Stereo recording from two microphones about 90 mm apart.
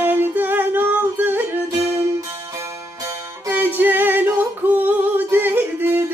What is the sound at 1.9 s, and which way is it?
Music, 35° right (ahead or behind).